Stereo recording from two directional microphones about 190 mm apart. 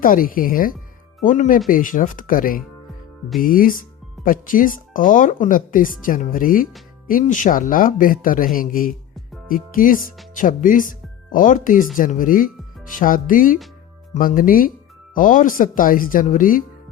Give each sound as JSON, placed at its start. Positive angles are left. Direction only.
{"t": 0.0, "sound": "speech", "side_deg": 45}